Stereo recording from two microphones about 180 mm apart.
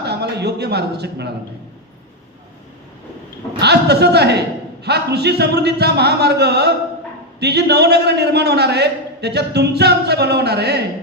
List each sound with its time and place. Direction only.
0.0 s a man's voice: 65° right (ahead or behind)
3.6 s a man's voice: 65° right (ahead or behind)